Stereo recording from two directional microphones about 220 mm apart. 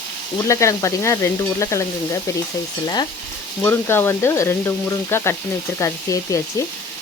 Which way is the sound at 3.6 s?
10° left (ahead or behind).